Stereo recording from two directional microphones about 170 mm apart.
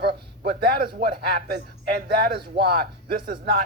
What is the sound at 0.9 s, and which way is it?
Speech, 55° right (ahead or behind).